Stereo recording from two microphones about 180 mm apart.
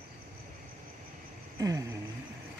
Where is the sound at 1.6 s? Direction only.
20° right (ahead or behind).